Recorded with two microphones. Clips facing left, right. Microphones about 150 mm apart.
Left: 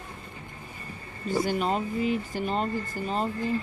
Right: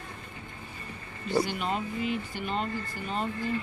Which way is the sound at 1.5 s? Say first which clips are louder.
Left 5 dB; 40° left (ahead or behind).